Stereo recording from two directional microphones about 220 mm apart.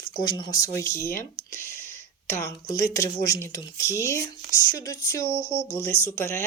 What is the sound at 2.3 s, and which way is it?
Speech, 15° left (ahead or behind).